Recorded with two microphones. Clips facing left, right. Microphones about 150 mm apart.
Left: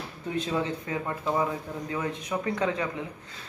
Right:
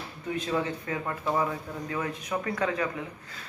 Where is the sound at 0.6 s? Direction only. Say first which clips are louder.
Left 1 dB; 20° left (ahead or behind).